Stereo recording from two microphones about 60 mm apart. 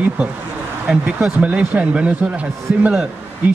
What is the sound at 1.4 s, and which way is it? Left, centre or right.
A man's voice, right.